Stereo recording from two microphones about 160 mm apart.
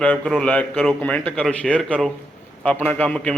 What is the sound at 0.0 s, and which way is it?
A man's voice, 5° left (ahead or behind).